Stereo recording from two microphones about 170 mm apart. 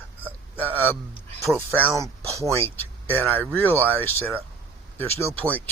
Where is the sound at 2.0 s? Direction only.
15° right (ahead or behind).